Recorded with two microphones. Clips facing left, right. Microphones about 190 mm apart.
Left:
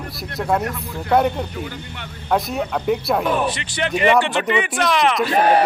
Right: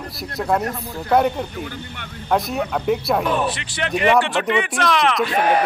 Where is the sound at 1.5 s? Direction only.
50° right (ahead or behind).